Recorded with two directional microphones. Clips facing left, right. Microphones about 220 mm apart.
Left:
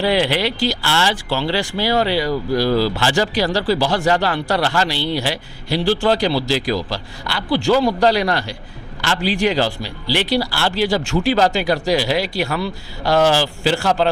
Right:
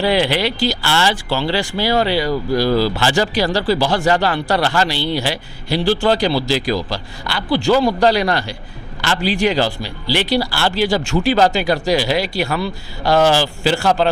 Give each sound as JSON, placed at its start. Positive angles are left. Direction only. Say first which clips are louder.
{"t": 0.0, "sound": "a man's voice", "louder": "right 1 dB", "side_deg": -15}
{"t": 2.6, "sound": "speech", "louder": "right 1 dB", "side_deg": -40}
{"t": 2.9, "sound": "a man's voice", "louder": "right 1 dB", "side_deg": -15}
{"t": 7.7, "sound": "speech", "louder": "right 1 dB", "side_deg": -25}
{"t": 8.1, "sound": "a man's voice", "louder": "right 1 dB", "side_deg": -15}
{"t": 13.1, "sound": "speech", "louder": "right 1 dB", "side_deg": -25}
{"t": 13.4, "sound": "a man's voice", "louder": "right 1 dB", "side_deg": -15}